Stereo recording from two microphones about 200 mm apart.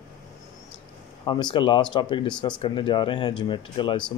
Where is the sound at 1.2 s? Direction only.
25° left (ahead or behind).